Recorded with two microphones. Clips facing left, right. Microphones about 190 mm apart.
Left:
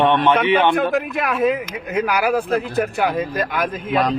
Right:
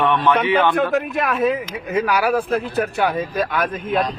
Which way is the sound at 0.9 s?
5° left (ahead or behind).